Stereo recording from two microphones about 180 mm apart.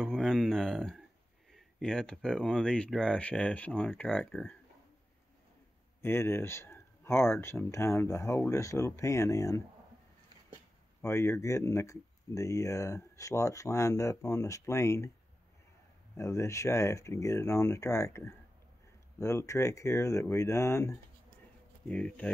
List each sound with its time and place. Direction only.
0.0 s speech: centre (ahead or behind)
6.0 s speech: 15° left (ahead or behind)
11.0 s speech: 15° left (ahead or behind)
16.2 s speech: 15° left (ahead or behind)